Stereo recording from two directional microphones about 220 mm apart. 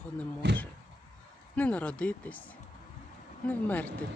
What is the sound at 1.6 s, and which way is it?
Speech, 5° left (ahead or behind).